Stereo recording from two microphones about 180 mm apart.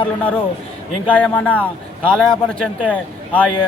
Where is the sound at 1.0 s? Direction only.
10° left (ahead or behind).